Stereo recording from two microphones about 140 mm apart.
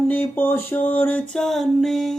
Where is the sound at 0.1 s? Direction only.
15° left (ahead or behind).